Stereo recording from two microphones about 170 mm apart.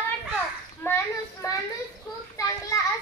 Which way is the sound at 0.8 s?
15° left (ahead or behind).